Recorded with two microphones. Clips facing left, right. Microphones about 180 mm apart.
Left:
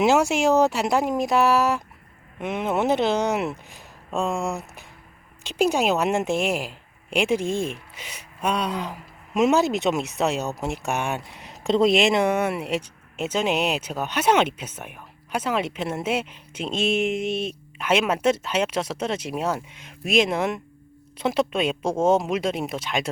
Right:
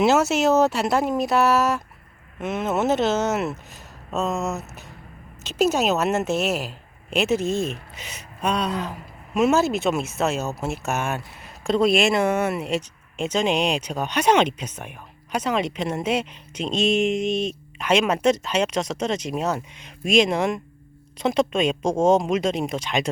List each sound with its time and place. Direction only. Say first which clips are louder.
0.0 s a woman's voice: right 1 dB; 15° left (ahead or behind)
21.8 s a man's voice: right 2 dB; 15° right (ahead or behind)
22.1 s speech: right 2 dB; 5° left (ahead or behind)